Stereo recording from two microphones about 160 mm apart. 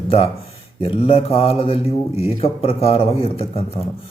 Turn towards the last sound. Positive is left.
turn(degrees=40)  # may be behind; listen again after turning